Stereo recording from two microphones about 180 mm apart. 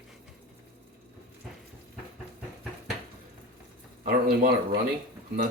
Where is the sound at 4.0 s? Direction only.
50° right (ahead or behind).